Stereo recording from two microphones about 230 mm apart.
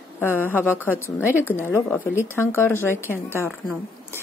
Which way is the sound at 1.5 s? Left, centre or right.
Centre.